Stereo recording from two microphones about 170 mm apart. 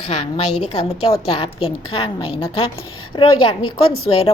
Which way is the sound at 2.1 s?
35° left (ahead or behind).